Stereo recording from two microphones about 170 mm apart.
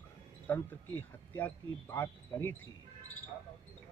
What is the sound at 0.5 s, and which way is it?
Speech, 10° left (ahead or behind).